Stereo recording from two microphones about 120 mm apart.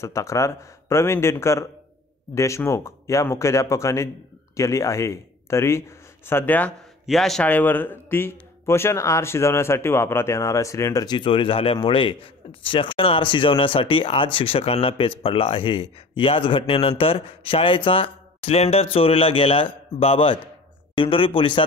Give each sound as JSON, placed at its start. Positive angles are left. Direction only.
{"t": 0.0, "sound": "speech", "side_deg": 25}
{"t": 7.1, "sound": "a man's voice", "side_deg": 0}
{"t": 7.4, "sound": "speech", "side_deg": 15}